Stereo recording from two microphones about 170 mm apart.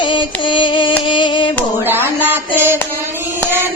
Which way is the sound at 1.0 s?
30° left (ahead or behind).